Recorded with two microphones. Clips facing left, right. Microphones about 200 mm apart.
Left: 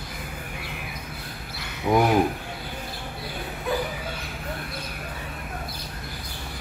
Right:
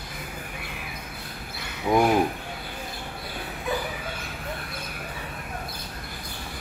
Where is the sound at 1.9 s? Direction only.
Centre (ahead or behind).